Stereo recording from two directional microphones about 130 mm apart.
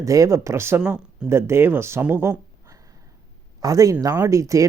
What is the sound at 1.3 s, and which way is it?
Speech, 20° right (ahead or behind).